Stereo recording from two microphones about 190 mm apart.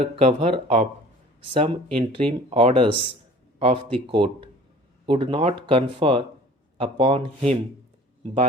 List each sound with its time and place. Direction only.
0.0 s speech: 30° right (ahead or behind)